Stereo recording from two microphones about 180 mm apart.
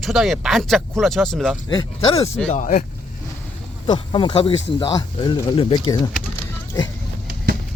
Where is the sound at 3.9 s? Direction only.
25° left (ahead or behind).